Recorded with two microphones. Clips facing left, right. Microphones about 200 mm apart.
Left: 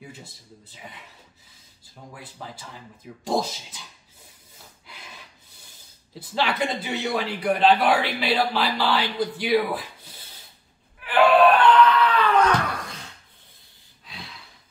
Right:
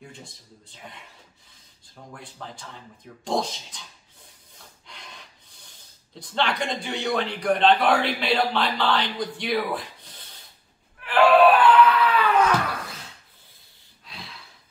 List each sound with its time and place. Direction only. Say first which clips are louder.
0.0 s a man's voice: left 1 dB; 5° left (ahead or behind)
2.1 s a man's voice: even; 5° left (ahead or behind)
4.6 s a sound: even; 5° left (ahead or behind)
6.1 s a man's voice: left 1 dB; 5° left (ahead or behind)
11.0 s a sound: even; centre (ahead or behind)
14.0 s gasp: left 1 dB; centre (ahead or behind)